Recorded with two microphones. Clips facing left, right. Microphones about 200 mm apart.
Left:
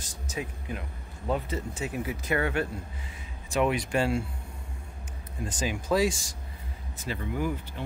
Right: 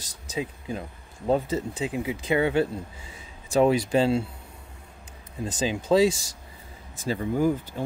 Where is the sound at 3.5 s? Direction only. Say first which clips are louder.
Right 6 dB; 35° right (ahead or behind).